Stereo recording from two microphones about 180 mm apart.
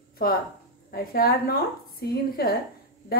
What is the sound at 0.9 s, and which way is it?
A woman's voice, 55° left (ahead or behind).